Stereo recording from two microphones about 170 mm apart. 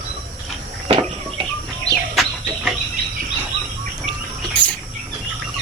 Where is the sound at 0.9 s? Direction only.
35° right (ahead or behind).